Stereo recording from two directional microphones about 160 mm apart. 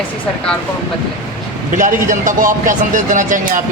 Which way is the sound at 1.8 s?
55° right (ahead or behind).